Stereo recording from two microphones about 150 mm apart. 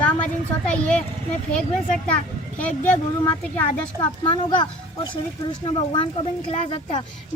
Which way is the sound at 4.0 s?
30° left (ahead or behind).